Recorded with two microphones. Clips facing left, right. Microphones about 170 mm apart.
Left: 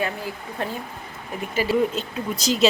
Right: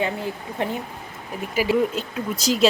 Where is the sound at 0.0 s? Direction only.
20° right (ahead or behind).